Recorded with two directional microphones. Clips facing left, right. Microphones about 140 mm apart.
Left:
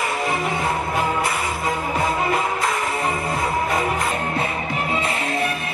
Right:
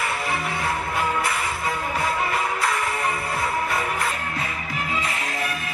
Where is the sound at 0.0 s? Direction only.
20° left (ahead or behind).